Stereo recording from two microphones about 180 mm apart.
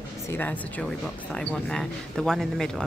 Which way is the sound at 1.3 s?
5° left (ahead or behind).